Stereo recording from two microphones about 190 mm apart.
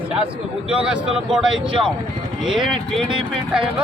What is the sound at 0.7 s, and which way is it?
Speech, 5° right (ahead or behind).